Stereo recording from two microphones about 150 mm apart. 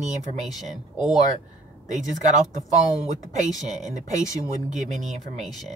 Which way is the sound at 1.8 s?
55° right (ahead or behind).